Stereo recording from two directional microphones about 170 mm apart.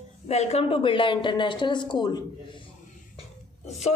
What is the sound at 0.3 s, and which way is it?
A woman's voice, 40° left (ahead or behind).